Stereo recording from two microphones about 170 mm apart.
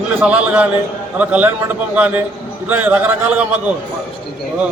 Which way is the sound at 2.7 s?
10° right (ahead or behind).